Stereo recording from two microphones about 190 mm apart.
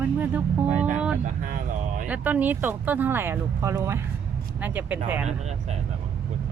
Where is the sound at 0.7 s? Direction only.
40° right (ahead or behind).